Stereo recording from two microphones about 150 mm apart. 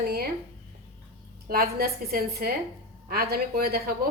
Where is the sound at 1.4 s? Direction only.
90° right.